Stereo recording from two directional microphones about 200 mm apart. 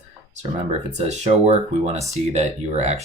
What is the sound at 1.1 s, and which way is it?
Speech, 35° right (ahead or behind).